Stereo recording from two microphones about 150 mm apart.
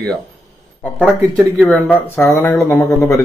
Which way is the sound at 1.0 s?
5° right (ahead or behind).